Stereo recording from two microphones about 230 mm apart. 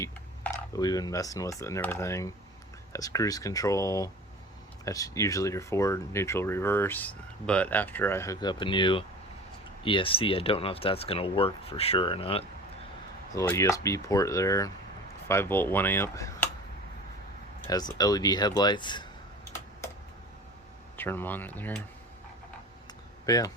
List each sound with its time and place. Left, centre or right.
0.0 s speech: centre
13.3 s speech: centre
17.6 s speech: centre
21.0 s speech: centre
23.2 s speech: centre